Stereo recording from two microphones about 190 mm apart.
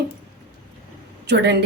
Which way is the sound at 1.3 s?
65° right (ahead or behind).